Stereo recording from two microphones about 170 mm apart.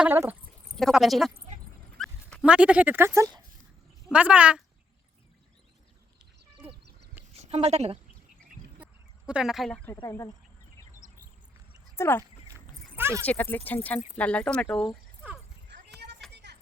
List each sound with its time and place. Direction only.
0.0 s speech: 10° right (ahead or behind)
0.8 s speech: centre (ahead or behind)
2.4 s speech: 5° right (ahead or behind)
7.3 s a woman's voice: 40° right (ahead or behind)
8.8 s chicken: 5° right (ahead or behind)
10.1 s speech: 20° left (ahead or behind)
11.9 s speech: 15° left (ahead or behind)
12.5 s a sound: 10° right (ahead or behind)
13.2 s speech: 10° left (ahead or behind)
16.0 s a sound: 90° right
16.3 s music: 85° right